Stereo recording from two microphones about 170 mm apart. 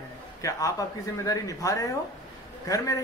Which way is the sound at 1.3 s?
20° left (ahead or behind).